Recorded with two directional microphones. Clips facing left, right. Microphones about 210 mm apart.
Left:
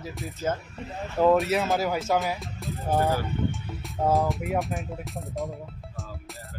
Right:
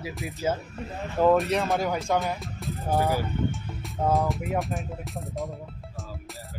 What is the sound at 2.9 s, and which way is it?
Speech, 15° right (ahead or behind).